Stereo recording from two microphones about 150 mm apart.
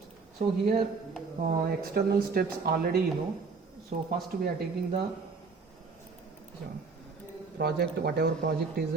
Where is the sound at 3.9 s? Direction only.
70° right (ahead or behind).